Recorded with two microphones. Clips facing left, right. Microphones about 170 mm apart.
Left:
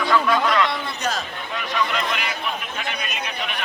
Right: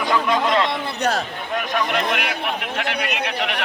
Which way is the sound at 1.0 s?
65° right (ahead or behind).